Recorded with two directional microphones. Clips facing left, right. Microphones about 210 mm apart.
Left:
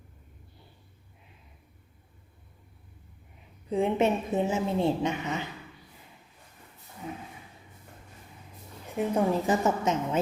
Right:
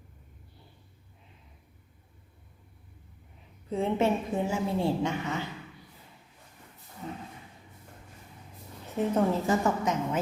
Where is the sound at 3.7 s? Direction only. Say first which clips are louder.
Left 2 dB; 15° left (ahead or behind).